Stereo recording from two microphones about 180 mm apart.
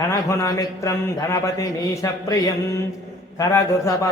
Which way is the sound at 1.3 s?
15° left (ahead or behind).